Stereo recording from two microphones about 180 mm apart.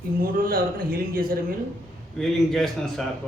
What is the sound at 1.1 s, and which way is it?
Speech, 55° right (ahead or behind).